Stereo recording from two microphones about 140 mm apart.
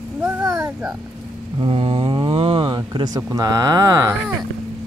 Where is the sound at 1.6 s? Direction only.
40° right (ahead or behind).